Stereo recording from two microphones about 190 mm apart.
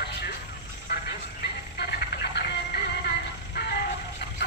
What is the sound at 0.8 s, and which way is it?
Music, 60° left (ahead or behind).